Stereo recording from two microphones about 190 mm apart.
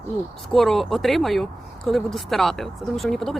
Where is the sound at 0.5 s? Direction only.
Centre (ahead or behind).